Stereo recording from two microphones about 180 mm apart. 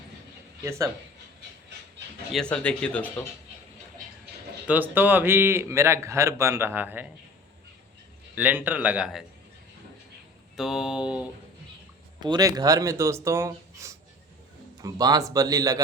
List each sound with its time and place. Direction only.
0.6 s a man's voice: 15° right (ahead or behind)
2.3 s speech: 5° left (ahead or behind)
4.6 s a man's voice: 10° right (ahead or behind)
8.4 s a man's voice: 10° right (ahead or behind)
10.6 s speech: 5° right (ahead or behind)
12.2 s a man's voice: 20° right (ahead or behind)